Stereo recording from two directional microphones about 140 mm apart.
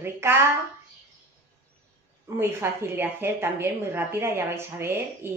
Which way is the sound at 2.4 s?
15° right (ahead or behind).